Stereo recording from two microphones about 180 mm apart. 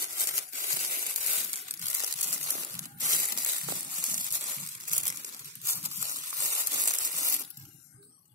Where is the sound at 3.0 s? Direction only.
50° right (ahead or behind).